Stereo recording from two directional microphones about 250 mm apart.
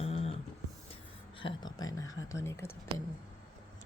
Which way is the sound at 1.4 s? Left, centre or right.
Centre.